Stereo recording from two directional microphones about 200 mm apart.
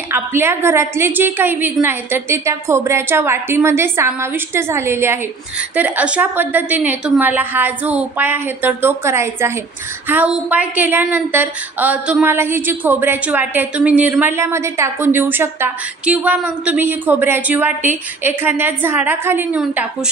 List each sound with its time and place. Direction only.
0.1 s a woman's voice: 10° right (ahead or behind)